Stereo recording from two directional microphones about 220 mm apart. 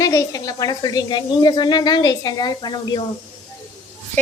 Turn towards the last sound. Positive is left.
turn(degrees=20)  # may be behind; listen again after turning